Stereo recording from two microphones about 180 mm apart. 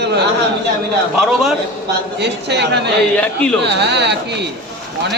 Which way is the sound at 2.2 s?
70° right (ahead or behind).